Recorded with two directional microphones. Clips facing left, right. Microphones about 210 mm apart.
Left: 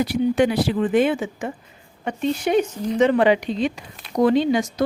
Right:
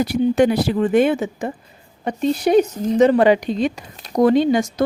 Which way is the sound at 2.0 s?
35° right (ahead or behind).